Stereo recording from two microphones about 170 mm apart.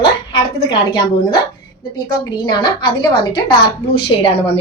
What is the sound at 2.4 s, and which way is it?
A woman's voice, 25° left (ahead or behind).